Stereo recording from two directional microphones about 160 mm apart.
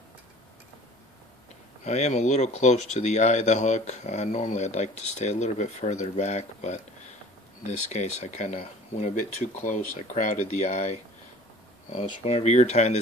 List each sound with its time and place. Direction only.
1.9 s speech: 45° left (ahead or behind)